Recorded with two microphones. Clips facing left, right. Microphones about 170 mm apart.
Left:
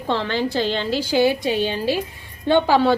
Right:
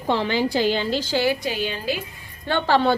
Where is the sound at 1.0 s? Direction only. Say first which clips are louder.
Left 4 dB; 15° left (ahead or behind); by 2.0 s 30° left (ahead or behind).